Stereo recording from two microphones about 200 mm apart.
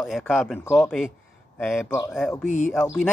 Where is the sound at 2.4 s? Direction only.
40° left (ahead or behind).